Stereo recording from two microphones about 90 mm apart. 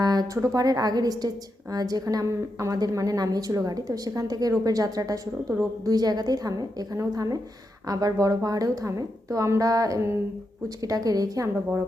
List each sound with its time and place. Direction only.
0.0 s a woman's voice: 45° right (ahead or behind)